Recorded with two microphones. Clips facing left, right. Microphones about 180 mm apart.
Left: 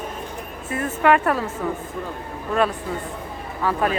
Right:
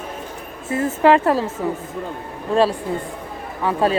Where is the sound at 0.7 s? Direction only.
25° right (ahead or behind).